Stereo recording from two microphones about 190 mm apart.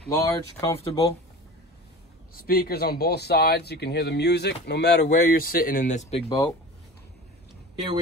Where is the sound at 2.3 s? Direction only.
50° left (ahead or behind).